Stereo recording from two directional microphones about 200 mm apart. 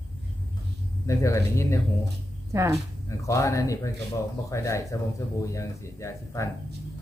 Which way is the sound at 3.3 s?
15° left (ahead or behind).